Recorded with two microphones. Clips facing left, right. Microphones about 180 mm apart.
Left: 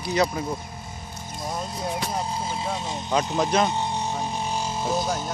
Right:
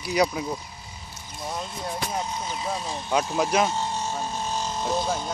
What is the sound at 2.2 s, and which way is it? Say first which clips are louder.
Vehicle: left 2 dB; 30° left (ahead or behind).